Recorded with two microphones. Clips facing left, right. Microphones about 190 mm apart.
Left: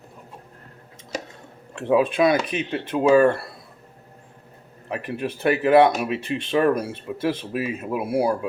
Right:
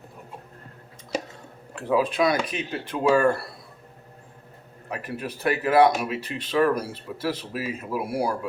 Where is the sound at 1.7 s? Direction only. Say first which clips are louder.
Left 4 dB; 25° left (ahead or behind).